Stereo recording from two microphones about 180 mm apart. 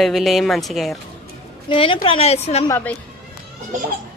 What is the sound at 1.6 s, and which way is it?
A woman's voice, 30° left (ahead or behind).